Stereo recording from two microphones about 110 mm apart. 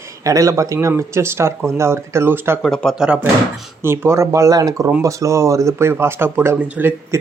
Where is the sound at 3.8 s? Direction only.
25° right (ahead or behind).